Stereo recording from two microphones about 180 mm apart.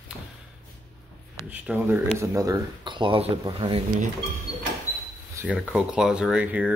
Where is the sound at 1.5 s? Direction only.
10° right (ahead or behind); by 3.8 s 30° right (ahead or behind).